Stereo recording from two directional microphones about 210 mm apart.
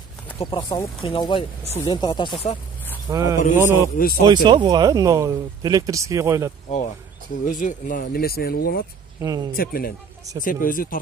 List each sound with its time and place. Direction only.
0.4 s speech: 25° left (ahead or behind)
3.1 s speech: 15° right (ahead or behind)
7.4 s speech: 40° left (ahead or behind)
9.2 s speech: 15° right (ahead or behind)
9.5 s speech: 45° left (ahead or behind)